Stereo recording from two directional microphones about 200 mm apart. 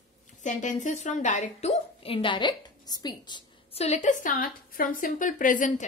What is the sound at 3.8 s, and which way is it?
A woman's voice, 35° left (ahead or behind).